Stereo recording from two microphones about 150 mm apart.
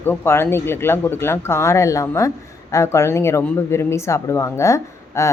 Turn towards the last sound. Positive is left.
turn(degrees=20)  # may be behind; listen again after turning